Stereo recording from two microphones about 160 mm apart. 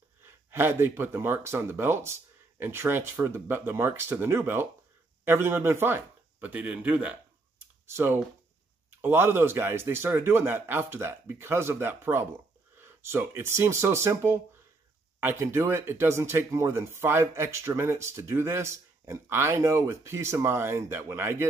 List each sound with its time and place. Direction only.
0.5 s speech: 15° right (ahead or behind)